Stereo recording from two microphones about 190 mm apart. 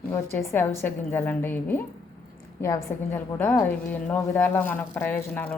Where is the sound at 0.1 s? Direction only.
15° left (ahead or behind).